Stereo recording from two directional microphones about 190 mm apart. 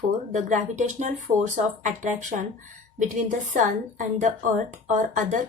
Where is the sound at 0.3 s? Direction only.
40° right (ahead or behind).